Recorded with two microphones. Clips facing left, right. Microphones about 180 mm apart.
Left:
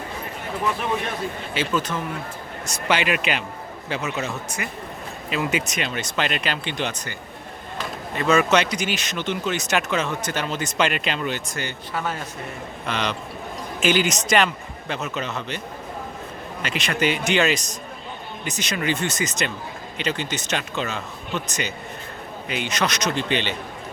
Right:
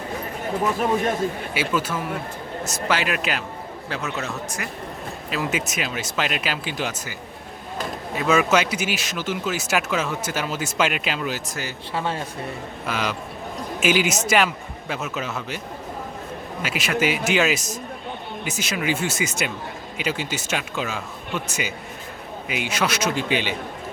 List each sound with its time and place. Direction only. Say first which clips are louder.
1.5 s speech: left 2 dB; 10° right (ahead or behind)
11.9 s speech: right 2 dB; 30° right (ahead or behind)
12.8 s speech: even; 5° right (ahead or behind)
16.6 s speech: even; 5° right (ahead or behind)